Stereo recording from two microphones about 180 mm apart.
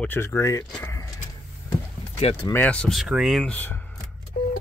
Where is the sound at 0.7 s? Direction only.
15° left (ahead or behind).